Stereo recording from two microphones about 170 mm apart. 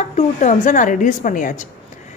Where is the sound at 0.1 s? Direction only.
45° left (ahead or behind).